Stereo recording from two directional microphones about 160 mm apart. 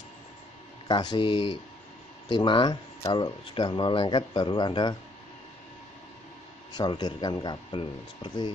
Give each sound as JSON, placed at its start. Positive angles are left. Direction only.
{"t": 0.8, "sound": "speech", "side_deg": 30}
{"t": 6.7, "sound": "speech", "side_deg": 25}